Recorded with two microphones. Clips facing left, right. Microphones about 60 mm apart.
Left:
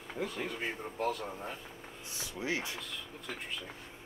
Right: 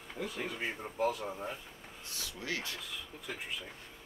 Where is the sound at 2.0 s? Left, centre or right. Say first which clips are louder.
Left 3 dB; centre.